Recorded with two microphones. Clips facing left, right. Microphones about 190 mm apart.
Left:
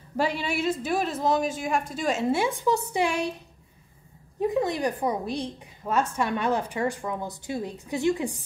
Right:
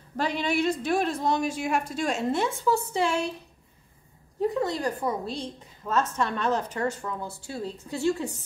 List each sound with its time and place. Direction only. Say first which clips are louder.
0.2 s a woman's voice: even; 10° left (ahead or behind)
4.4 s a woman's voice: left 2 dB; 15° left (ahead or behind)